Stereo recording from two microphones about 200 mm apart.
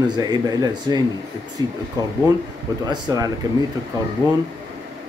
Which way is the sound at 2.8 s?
20° right (ahead or behind).